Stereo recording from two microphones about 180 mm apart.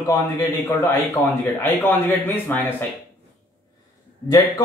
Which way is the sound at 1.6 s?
10° left (ahead or behind).